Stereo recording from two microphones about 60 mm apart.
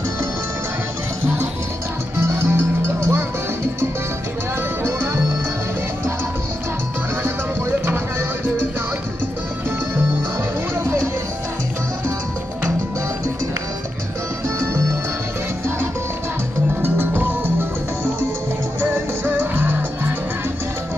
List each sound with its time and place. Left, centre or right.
2.1 s music: right
4.8 s music: right
7.8 s music: right
16.8 s music: right